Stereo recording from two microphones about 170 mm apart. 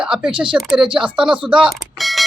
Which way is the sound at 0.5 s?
Centre (ahead or behind).